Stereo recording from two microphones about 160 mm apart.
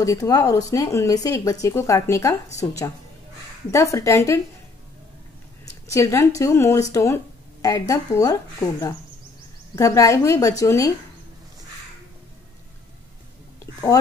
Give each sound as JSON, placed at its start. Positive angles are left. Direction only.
{"t": 0.0, "sound": "speech", "side_deg": 20}
{"t": 5.9, "sound": "speech", "side_deg": 20}